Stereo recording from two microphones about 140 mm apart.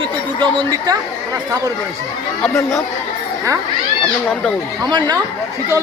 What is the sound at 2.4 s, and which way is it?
Speech, 20° left (ahead or behind).